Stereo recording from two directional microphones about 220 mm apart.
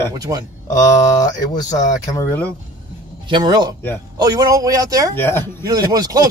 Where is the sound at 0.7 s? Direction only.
15° left (ahead or behind).